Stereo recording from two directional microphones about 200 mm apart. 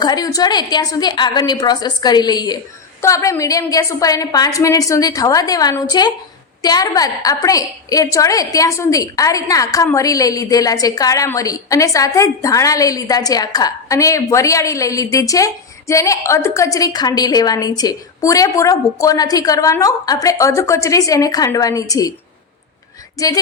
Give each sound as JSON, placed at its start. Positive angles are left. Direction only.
{"t": 0.0, "sound": "a woman's voice", "side_deg": 20}
{"t": 23.2, "sound": "a woman's voice", "side_deg": 15}